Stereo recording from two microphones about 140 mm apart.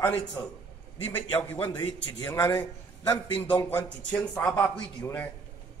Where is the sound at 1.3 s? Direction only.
15° left (ahead or behind).